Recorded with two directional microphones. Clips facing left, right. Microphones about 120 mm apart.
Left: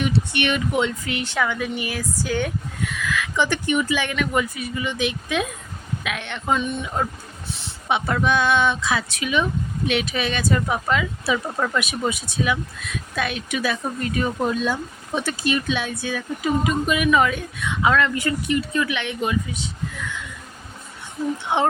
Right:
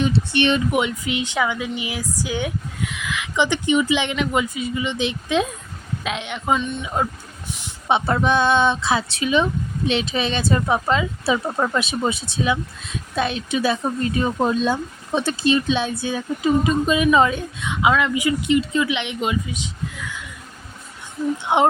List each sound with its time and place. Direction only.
0.0 s speech: 30° right (ahead or behind)
0.7 s speech: 15° right (ahead or behind)
6.2 s speech: 15° right (ahead or behind)
7.9 s speech: 30° right (ahead or behind)
21.5 s speech: 20° right (ahead or behind)